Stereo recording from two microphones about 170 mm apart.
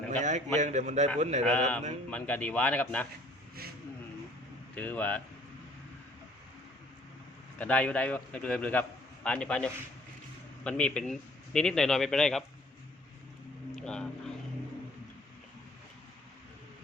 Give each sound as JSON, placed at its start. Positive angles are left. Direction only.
{"t": 0.2, "sound": "a man's voice", "side_deg": -45}
{"t": 1.5, "sound": "a man's voice", "side_deg": 10}
{"t": 4.7, "sound": "a man's voice", "side_deg": 10}
{"t": 7.6, "sound": "a man's voice", "side_deg": 10}
{"t": 13.7, "sound": "vehicle", "side_deg": 5}